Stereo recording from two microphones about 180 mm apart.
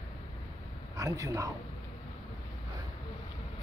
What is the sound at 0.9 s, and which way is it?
Speech, 20° right (ahead or behind).